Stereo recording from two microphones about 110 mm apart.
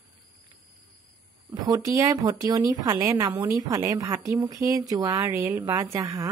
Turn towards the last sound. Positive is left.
turn(degrees=-50)  # may be behind; listen again after turning